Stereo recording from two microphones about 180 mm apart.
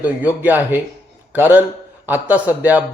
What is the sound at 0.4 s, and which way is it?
Speech, 10° right (ahead or behind).